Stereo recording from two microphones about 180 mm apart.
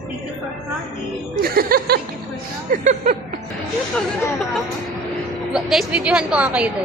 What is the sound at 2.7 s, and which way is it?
Speech, 45° right (ahead or behind).